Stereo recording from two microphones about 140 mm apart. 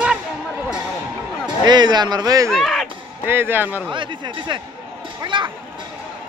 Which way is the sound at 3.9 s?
35° right (ahead or behind).